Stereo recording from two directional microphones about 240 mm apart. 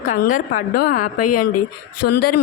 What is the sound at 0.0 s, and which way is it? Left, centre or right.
A woman's voice, left.